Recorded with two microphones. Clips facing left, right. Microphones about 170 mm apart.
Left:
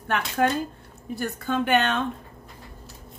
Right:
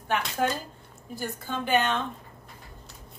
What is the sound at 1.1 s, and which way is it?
Speech, 65° left (ahead or behind).